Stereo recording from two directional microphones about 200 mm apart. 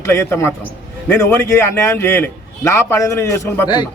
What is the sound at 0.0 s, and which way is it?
A man's voice, 15° left (ahead or behind).